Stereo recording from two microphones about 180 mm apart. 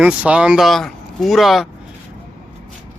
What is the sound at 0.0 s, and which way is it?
Speech, 5° right (ahead or behind).